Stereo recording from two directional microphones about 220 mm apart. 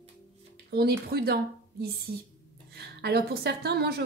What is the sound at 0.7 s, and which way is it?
Speech, 45° right (ahead or behind).